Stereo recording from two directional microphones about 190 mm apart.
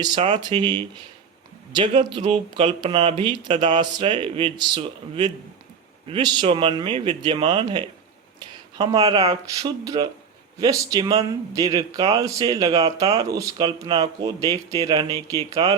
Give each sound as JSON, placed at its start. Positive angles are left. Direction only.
{"t": 0.0, "sound": "speech", "side_deg": -25}
{"t": 9.6, "sound": "speech", "side_deg": -20}